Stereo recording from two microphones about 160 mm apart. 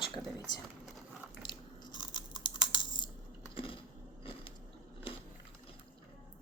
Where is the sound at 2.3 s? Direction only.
30° left (ahead or behind).